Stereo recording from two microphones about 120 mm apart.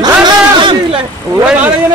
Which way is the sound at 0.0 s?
40° right (ahead or behind).